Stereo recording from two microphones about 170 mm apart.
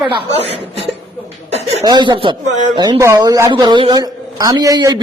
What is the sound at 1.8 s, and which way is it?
Speech, 25° right (ahead or behind).